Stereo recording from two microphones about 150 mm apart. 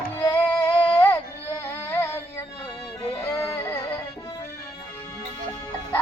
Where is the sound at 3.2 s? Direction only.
15° left (ahead or behind).